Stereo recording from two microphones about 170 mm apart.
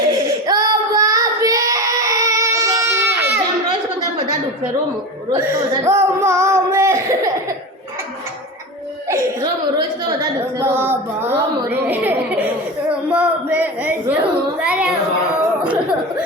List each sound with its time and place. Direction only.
0.4 s child singing: 20° right (ahead or behind)
5.3 s speech: 20° right (ahead or behind)
9.4 s a sound: 25° right (ahead or behind); by 14.9 s 5° right (ahead or behind)